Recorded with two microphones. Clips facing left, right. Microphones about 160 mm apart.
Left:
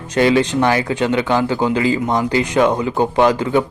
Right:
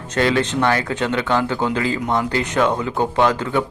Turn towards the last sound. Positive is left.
turn(degrees=15)  # may be behind; listen again after turning